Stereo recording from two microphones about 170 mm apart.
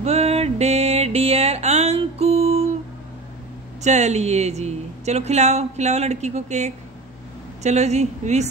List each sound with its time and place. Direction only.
0.0 s music: 35° right (ahead or behind)
3.8 s speech: 40° right (ahead or behind)